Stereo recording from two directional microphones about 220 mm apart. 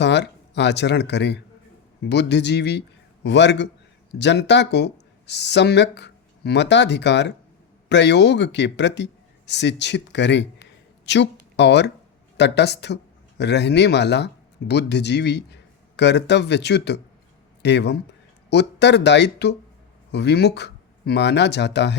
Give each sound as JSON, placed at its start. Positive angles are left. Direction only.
{"t": 0.0, "sound": "a man's voice", "side_deg": 50}